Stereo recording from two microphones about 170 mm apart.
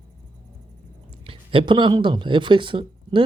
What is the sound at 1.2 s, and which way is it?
Speech, 30° right (ahead or behind).